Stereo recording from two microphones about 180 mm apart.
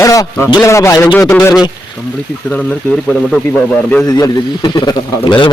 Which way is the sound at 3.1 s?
5° left (ahead or behind).